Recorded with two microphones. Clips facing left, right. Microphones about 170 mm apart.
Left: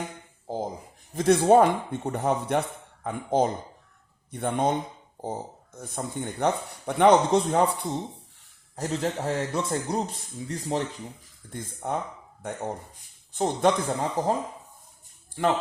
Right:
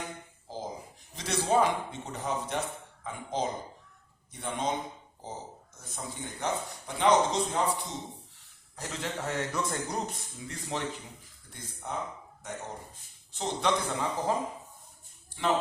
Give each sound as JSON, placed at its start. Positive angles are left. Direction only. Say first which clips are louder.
{"t": 1.1, "sound": "speech", "louder": "left 9 dB", "side_deg": 55}
{"t": 8.7, "sound": "a man's voice", "louder": "left 8 dB", "side_deg": 40}
{"t": 10.5, "sound": "speech", "louder": "left 7 dB", "side_deg": 40}
{"t": 11.5, "sound": "a man's voice", "louder": "left 7 dB", "side_deg": 50}
{"t": 15.4, "sound": "a man's voice", "louder": "left 5 dB", "side_deg": 50}